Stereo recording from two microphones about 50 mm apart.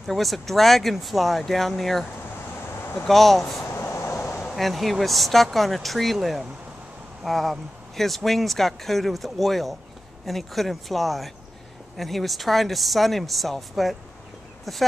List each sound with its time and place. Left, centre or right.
0.0 s speech: centre
3.1 s speech: centre
3.9 s a sound: left
4.4 s speech: centre